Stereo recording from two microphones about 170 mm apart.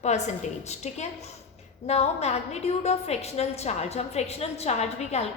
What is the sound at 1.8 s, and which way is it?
A woman's voice, 40° left (ahead or behind).